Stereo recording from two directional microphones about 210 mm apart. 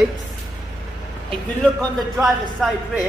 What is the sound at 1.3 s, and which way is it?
A man's voice, centre (ahead or behind).